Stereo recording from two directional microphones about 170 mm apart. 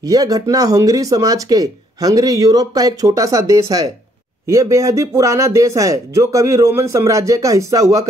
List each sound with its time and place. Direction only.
0.0 s speech: 20° right (ahead or behind)